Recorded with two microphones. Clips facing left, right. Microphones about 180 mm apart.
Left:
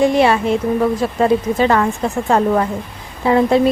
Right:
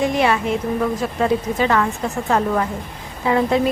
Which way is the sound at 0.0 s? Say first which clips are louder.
Left 5 dB; 30° left (ahead or behind).